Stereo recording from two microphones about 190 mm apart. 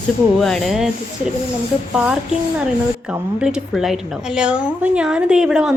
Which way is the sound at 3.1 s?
5° right (ahead or behind).